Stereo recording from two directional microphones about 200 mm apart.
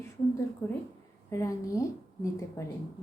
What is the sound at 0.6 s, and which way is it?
A woman's voice, 10° left (ahead or behind).